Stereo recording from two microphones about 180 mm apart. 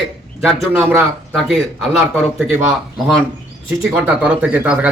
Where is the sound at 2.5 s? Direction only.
15° right (ahead or behind).